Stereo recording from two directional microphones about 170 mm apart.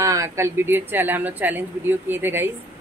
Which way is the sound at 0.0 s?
20° right (ahead or behind).